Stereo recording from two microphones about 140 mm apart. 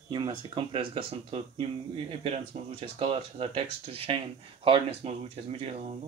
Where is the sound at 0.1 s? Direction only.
35° right (ahead or behind).